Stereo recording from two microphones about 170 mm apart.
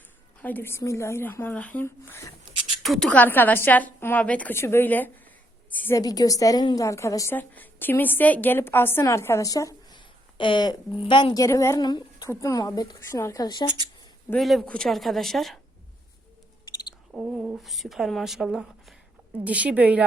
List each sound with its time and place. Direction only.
0.4 s a woman's voice: 10° left (ahead or behind)
2.8 s a woman's voice: centre (ahead or behind)
6.0 s a woman's voice: 20° left (ahead or behind)
14.3 s speech: centre (ahead or behind)
17.1 s a woman's voice: 5° right (ahead or behind)